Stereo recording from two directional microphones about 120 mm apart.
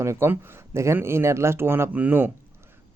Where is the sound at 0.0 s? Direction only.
25° right (ahead or behind).